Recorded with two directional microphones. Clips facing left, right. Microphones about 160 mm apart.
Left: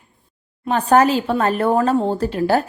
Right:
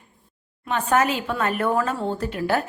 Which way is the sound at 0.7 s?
35° left (ahead or behind).